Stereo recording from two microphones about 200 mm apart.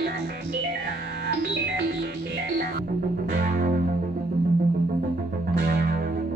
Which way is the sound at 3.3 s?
45° right (ahead or behind).